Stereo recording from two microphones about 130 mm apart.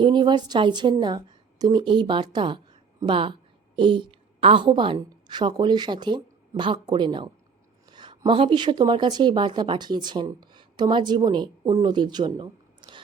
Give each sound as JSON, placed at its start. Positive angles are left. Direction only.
{"t": 0.0, "sound": "a woman's voice", "side_deg": -35}